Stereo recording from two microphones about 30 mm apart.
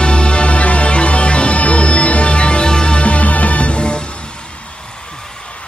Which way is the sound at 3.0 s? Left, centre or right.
Left.